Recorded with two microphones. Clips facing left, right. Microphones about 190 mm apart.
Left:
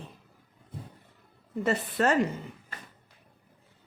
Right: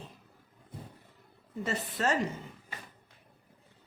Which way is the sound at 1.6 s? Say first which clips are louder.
Left 5 dB; 60° left (ahead or behind).